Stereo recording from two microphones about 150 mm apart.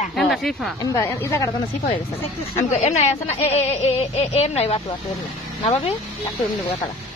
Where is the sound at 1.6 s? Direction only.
35° left (ahead or behind).